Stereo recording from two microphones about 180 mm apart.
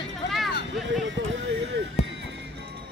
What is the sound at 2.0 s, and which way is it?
Music, 35° left (ahead or behind).